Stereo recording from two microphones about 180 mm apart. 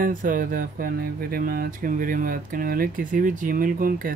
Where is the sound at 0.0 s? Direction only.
45° right (ahead or behind).